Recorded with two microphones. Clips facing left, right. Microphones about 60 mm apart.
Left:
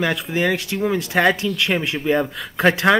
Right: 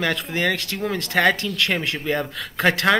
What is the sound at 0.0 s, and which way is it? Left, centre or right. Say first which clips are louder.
Speech: left 2 dB; centre.